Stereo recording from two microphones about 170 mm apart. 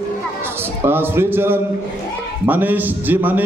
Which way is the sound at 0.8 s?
15° right (ahead or behind).